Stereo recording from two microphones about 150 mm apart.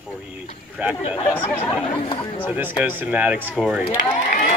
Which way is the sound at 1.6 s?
35° left (ahead or behind).